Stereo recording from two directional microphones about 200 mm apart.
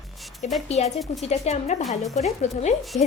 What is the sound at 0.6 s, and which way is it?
A woman's voice, 35° left (ahead or behind).